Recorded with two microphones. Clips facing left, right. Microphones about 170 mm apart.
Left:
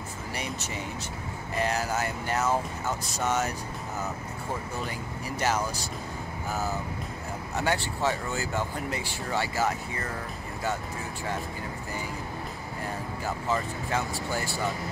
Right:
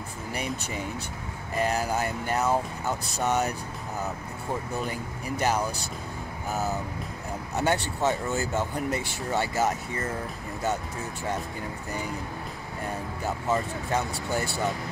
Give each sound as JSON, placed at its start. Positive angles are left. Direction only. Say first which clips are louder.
{"t": 1.8, "sound": "speech", "louder": "right 2 dB", "side_deg": -15}
{"t": 5.4, "sound": "speech", "louder": "right 2 dB", "side_deg": -15}
{"t": 7.5, "sound": "speech", "louder": "right 2 dB", "side_deg": -20}
{"t": 13.5, "sound": "speech", "louder": "right 3 dB", "side_deg": -20}